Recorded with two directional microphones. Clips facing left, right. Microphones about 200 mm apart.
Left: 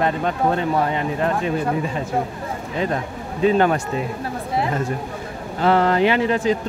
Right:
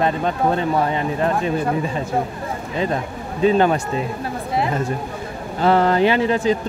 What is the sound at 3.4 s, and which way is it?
Speech, 25° right (ahead or behind).